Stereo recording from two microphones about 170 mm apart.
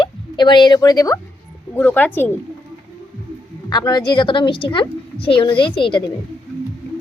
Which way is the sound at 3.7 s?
25° left (ahead or behind).